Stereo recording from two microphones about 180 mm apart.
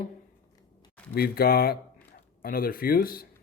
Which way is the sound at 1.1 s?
60° left (ahead or behind).